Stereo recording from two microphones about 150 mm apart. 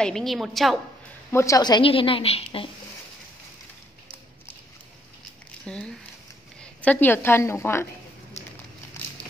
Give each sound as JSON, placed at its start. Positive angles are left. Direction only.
{"t": 0.0, "sound": "a woman's voice", "side_deg": 5}
{"t": 1.3, "sound": "a woman's voice", "side_deg": 20}
{"t": 5.7, "sound": "a woman's voice", "side_deg": 5}